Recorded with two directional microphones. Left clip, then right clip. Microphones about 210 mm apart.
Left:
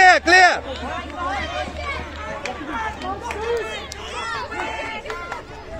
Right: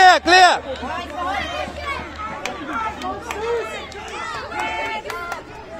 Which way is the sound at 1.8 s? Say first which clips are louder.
Right 2 dB; 35° right (ahead or behind).